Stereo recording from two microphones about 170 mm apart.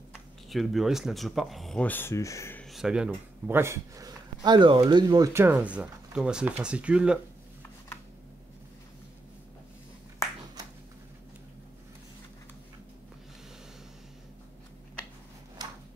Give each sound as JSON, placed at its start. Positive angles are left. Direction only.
{"t": 0.5, "sound": "speech", "side_deg": 0}
{"t": 2.6, "sound": "speech", "side_deg": 0}
{"t": 15.6, "sound": "a sound", "side_deg": -25}